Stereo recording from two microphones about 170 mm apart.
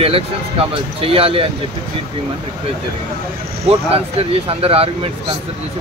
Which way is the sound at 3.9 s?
35° right (ahead or behind).